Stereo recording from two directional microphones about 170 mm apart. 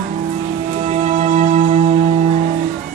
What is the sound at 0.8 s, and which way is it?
Music, 45° right (ahead or behind).